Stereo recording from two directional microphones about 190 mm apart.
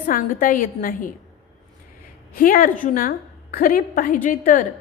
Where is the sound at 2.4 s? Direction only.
50° left (ahead or behind).